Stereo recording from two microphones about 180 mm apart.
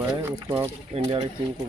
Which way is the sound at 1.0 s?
30° right (ahead or behind).